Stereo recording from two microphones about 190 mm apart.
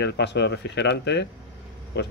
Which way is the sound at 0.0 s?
65° left (ahead or behind).